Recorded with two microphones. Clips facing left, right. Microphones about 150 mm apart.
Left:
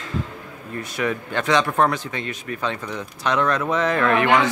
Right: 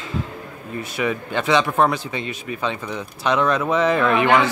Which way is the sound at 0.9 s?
10° right (ahead or behind).